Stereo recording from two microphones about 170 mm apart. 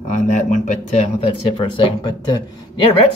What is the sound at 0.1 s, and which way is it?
Speech, 45° left (ahead or behind).